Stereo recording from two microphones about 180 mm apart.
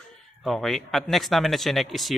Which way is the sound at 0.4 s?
Centre (ahead or behind).